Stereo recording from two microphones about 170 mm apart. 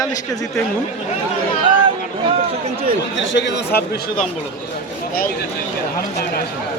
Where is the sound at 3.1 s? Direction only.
90° left.